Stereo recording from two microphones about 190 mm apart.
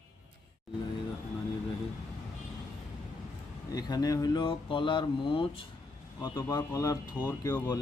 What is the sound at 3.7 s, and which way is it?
Speech, 20° left (ahead or behind).